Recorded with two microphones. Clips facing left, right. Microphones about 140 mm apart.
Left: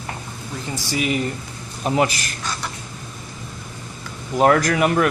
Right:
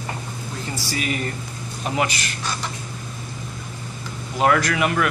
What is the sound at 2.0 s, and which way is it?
Speech, 40° left (ahead or behind).